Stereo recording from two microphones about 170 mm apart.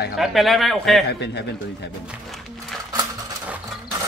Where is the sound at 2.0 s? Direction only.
Centre (ahead or behind).